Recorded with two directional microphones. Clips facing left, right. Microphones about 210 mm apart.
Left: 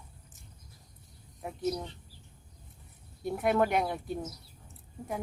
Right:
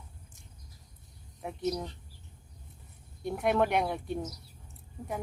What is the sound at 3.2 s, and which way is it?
Speech, centre (ahead or behind).